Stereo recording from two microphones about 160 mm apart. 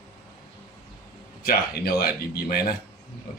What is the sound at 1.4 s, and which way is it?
Speech, 70° left (ahead or behind).